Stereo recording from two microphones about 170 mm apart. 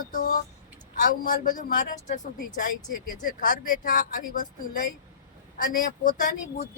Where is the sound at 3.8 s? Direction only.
50° left (ahead or behind).